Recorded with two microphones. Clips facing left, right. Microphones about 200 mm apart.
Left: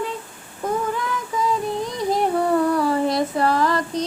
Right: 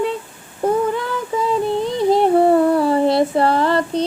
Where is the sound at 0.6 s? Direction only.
30° right (ahead or behind).